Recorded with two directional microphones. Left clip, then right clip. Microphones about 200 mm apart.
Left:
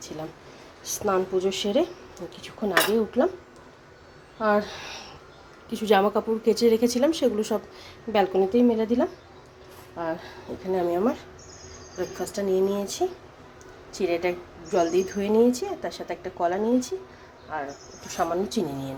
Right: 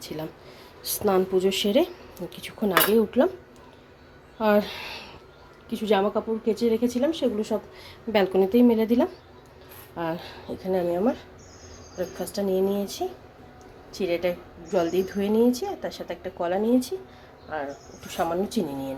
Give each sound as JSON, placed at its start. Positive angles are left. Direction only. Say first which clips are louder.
{"t": 0.9, "sound": "speech", "louder": "right 2 dB", "side_deg": -15}
{"t": 4.4, "sound": "speech", "louder": "right 1 dB", "side_deg": -10}
{"t": 5.7, "sound": "a woman's voice", "louder": "left 2 dB", "side_deg": 10}
{"t": 8.1, "sound": "speech", "louder": "right 1 dB", "side_deg": -5}
{"t": 10.7, "sound": "a woman's voice", "louder": "even", "side_deg": 0}
{"t": 18.2, "sound": "a woman's voice", "louder": "even", "side_deg": -5}